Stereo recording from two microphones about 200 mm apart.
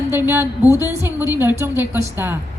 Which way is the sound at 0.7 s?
15° left (ahead or behind).